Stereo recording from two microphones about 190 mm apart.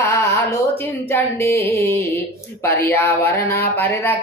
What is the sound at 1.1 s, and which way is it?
Speech, 15° left (ahead or behind).